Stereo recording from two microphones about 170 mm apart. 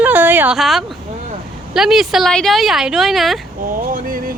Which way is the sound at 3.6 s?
55° right (ahead or behind).